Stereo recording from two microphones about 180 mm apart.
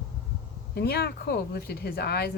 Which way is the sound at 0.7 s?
60° left (ahead or behind).